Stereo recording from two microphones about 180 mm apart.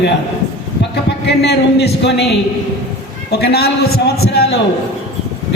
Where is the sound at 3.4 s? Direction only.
60° left (ahead or behind).